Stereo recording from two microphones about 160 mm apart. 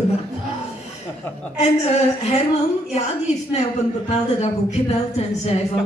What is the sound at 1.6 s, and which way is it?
Speech, 45° left (ahead or behind).